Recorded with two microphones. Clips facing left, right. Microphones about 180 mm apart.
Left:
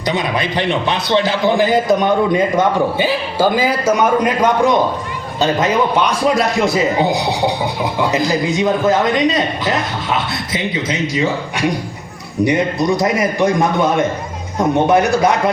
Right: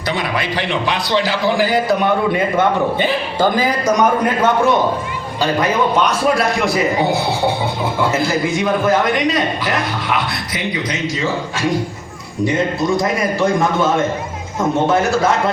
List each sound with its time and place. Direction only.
0.1 s a man's voice: 20° left (ahead or behind)
3.0 s a man's voice: 10° left (ahead or behind)